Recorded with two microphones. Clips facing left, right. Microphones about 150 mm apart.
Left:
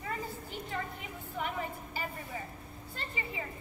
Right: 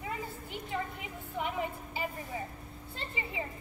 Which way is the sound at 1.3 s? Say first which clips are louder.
Right 2 dB; 15° right (ahead or behind).